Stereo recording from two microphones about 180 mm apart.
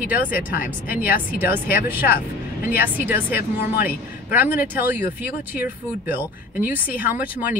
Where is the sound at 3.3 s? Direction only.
60° left (ahead or behind).